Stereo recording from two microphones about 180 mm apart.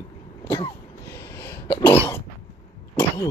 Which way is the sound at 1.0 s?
65° left (ahead or behind).